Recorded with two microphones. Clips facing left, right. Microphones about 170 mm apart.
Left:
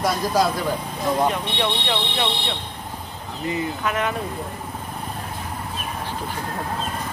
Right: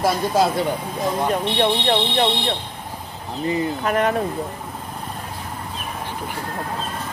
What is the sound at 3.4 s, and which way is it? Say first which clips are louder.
Speech: right 3 dB; 35° right (ahead or behind).